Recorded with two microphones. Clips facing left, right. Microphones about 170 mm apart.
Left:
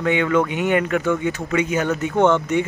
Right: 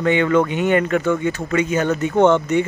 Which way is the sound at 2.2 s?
15° right (ahead or behind).